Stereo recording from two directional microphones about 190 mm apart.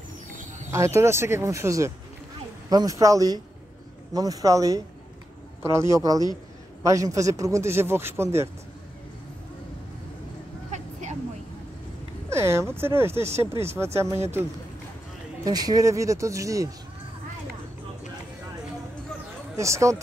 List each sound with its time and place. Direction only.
0.7 s a man's voice: 15° right (ahead or behind)
10.7 s a sound: 40° right (ahead or behind)
12.3 s a man's voice: 15° right (ahead or behind)
15.4 s a man's voice: 20° right (ahead or behind)
19.5 s a man's voice: 15° right (ahead or behind)